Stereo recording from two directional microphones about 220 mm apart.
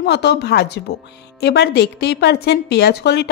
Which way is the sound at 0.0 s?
50° left (ahead or behind).